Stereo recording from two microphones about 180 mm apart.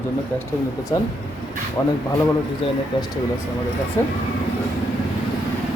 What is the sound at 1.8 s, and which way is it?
Speech, 15° left (ahead or behind).